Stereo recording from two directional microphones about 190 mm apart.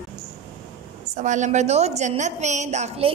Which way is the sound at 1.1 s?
40° right (ahead or behind).